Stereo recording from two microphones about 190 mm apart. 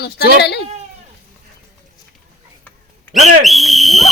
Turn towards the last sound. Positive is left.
turn(degrees=0)  # may be behind; listen again after turning